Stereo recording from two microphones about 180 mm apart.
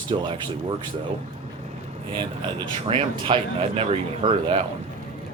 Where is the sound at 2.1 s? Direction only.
30° right (ahead or behind).